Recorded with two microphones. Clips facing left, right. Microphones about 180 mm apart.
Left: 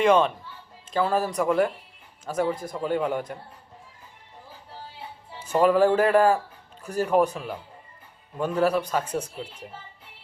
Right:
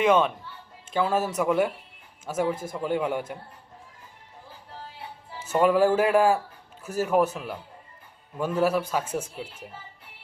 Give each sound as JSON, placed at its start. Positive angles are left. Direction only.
{"t": 0.0, "sound": "a man's voice", "side_deg": -5}
{"t": 5.5, "sound": "a man's voice", "side_deg": -10}
{"t": 8.4, "sound": "a man's voice", "side_deg": -5}